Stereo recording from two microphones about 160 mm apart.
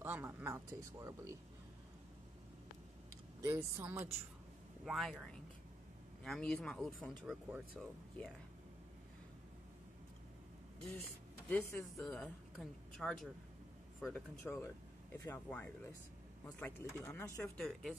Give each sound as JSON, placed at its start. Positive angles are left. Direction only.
{"t": 0.0, "sound": "speech", "side_deg": -15}
{"t": 3.3, "sound": "speech", "side_deg": -15}
{"t": 4.8, "sound": "speech", "side_deg": 0}
{"t": 11.4, "sound": "speech", "side_deg": 10}
{"t": 14.0, "sound": "speech", "side_deg": 15}
{"t": 17.6, "sound": "speech", "side_deg": 0}